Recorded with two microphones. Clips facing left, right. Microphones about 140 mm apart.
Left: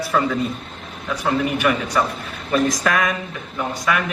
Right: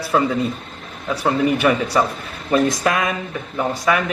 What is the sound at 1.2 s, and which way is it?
A man's voice, 35° right (ahead or behind).